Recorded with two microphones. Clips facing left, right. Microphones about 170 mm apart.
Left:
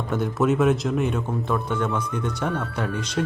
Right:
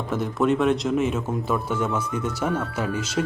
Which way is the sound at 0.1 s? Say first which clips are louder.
Even; centre (ahead or behind).